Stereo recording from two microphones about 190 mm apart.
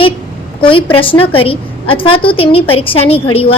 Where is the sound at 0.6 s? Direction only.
25° left (ahead or behind).